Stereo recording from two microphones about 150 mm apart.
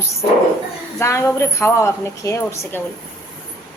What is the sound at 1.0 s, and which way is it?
A woman's voice, 20° left (ahead or behind).